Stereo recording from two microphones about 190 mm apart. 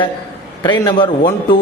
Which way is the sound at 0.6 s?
25° left (ahead or behind).